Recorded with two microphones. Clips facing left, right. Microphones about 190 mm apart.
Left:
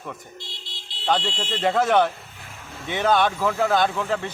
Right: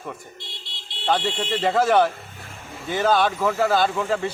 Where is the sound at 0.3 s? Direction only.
60° right (ahead or behind).